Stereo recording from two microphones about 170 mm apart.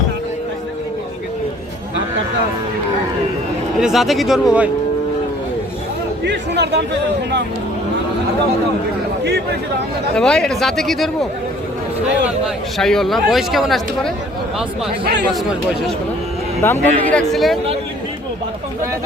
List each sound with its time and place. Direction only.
3.8 s speech: centre (ahead or behind)
6.2 s speech: 85° right
10.2 s speech: 5° left (ahead or behind)
12.7 s speech: centre (ahead or behind)
15.0 s a man's voice: 65° right (ahead or behind)
16.6 s speech: 10° left (ahead or behind)